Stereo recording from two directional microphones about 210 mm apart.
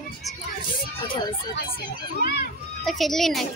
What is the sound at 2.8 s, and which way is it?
Speech, centre (ahead or behind).